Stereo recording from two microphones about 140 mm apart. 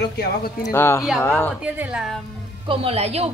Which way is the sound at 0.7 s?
15° left (ahead or behind).